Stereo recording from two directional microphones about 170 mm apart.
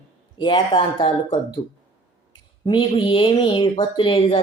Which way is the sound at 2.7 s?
30° left (ahead or behind).